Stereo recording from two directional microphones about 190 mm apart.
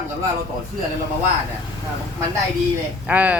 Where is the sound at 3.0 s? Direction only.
10° right (ahead or behind).